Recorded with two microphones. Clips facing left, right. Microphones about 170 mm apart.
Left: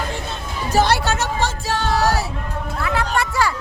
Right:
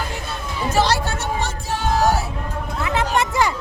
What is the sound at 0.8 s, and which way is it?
Music, 70° left (ahead or behind).